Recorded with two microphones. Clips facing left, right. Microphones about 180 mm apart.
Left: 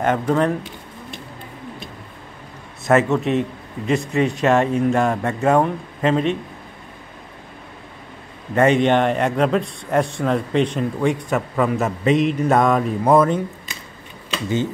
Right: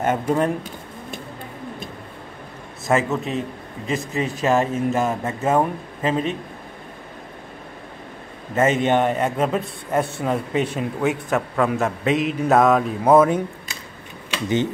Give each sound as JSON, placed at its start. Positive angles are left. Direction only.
{"t": 0.0, "sound": "speech", "side_deg": -10}
{"t": 2.9, "sound": "a man's voice", "side_deg": 0}
{"t": 8.5, "sound": "a man's voice", "side_deg": -5}